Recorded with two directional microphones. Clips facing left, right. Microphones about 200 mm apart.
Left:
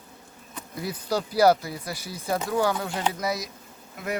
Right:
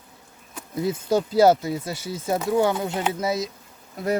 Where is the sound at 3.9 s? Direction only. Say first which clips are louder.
Right 7 dB; 35° right (ahead or behind).